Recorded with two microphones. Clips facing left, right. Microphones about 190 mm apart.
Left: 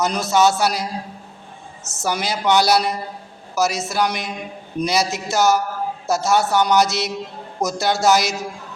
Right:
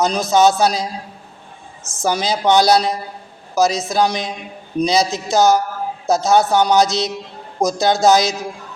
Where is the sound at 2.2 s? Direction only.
20° right (ahead or behind).